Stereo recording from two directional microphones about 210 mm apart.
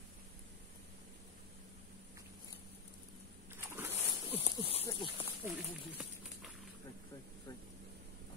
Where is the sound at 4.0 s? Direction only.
30° left (ahead or behind).